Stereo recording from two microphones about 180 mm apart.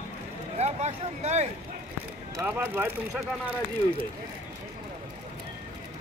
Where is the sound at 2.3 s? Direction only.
10° right (ahead or behind).